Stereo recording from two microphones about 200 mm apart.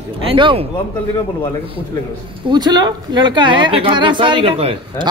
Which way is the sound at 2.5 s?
20° right (ahead or behind).